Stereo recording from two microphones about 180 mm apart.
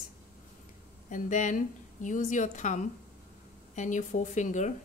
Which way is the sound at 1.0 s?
45° left (ahead or behind).